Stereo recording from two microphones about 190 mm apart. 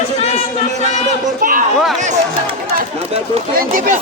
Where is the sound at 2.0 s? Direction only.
35° right (ahead or behind).